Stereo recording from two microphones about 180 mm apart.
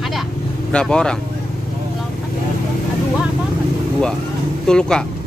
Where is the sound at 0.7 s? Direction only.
5° left (ahead or behind).